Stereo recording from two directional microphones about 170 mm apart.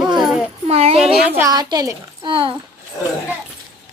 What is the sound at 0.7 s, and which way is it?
Speech, 35° right (ahead or behind).